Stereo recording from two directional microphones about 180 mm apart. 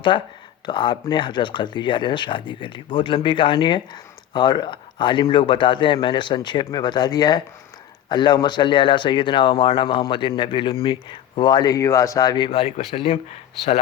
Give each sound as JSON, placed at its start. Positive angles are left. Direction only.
{"t": 0.1, "sound": "speech", "side_deg": 30}
{"t": 12.5, "sound": "speech", "side_deg": 35}